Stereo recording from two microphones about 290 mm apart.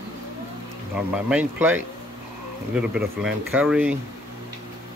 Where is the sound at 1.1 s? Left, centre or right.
Centre.